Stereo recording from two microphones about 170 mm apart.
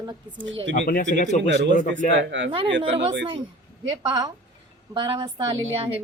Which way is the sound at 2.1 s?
90° right.